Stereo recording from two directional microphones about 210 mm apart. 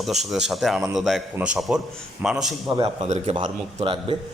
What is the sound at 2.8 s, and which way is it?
A man's voice, 30° right (ahead or behind).